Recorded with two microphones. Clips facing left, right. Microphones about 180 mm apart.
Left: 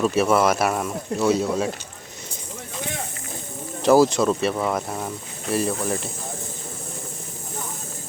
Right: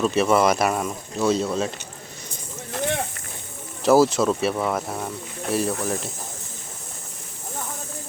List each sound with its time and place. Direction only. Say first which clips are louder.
0.0 s speech: even; 5° left (ahead or behind)
3.8 s speech: left 1 dB; centre (ahead or behind)